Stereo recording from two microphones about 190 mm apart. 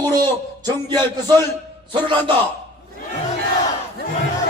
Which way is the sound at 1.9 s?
25° right (ahead or behind).